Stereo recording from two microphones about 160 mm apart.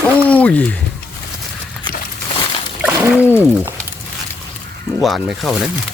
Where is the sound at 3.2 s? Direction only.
15° left (ahead or behind).